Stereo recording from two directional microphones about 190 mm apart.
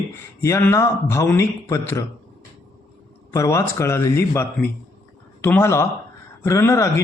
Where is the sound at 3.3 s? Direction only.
15° left (ahead or behind).